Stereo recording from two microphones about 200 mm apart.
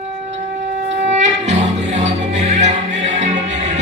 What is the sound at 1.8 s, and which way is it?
Music, 35° right (ahead or behind).